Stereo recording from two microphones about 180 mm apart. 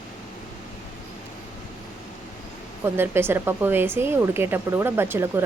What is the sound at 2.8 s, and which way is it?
Speech, 15° right (ahead or behind).